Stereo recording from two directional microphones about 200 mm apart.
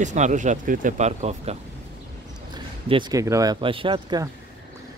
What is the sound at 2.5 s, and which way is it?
Speech, 20° right (ahead or behind).